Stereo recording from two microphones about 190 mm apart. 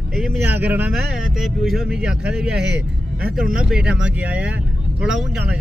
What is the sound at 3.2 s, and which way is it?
Speech, 50° right (ahead or behind).